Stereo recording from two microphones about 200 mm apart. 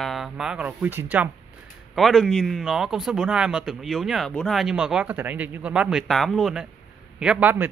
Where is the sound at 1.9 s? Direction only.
Centre (ahead or behind).